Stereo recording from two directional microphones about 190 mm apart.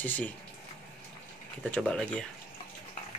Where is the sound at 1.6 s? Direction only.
5° left (ahead or behind).